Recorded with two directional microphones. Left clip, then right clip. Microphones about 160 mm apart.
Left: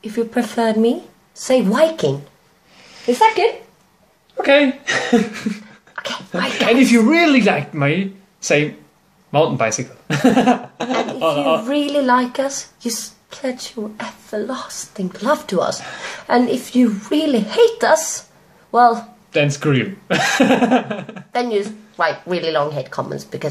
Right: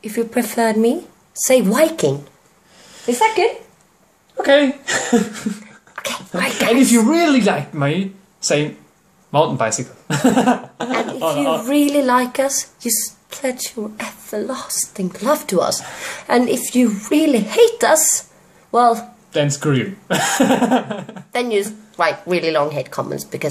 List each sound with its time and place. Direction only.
0.0 s speech: 20° right (ahead or behind)
4.5 s speech: 10° left (ahead or behind)
5.9 s a sound: 20° right (ahead or behind)
6.7 s speech: 10° left (ahead or behind)
9.3 s speech: 5° left (ahead or behind)
11.6 s speech: 20° right (ahead or behind)
19.3 s speech: 10° left (ahead or behind)
21.3 s speech: 25° right (ahead or behind)